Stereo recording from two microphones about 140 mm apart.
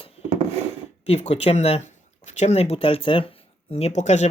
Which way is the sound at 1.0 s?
45° left (ahead or behind).